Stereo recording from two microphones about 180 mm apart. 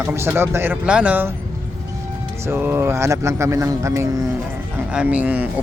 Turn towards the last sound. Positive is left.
turn(degrees=-10)  # may be behind; listen again after turning